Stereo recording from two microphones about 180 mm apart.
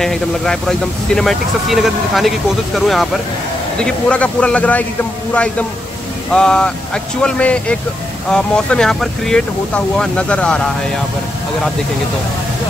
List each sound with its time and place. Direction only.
0.0 s speech: centre (ahead or behind)